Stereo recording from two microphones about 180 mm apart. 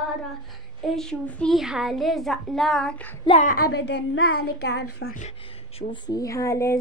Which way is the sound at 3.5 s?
60° left (ahead or behind).